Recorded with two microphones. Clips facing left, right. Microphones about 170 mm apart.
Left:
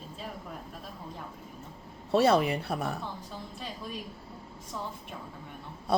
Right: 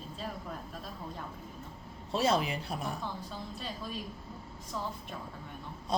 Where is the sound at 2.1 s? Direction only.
65° left (ahead or behind).